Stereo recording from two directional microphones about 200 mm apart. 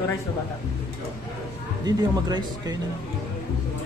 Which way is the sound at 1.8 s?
20° right (ahead or behind).